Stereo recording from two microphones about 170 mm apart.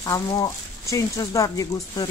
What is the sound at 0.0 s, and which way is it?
Speech, 20° left (ahead or behind).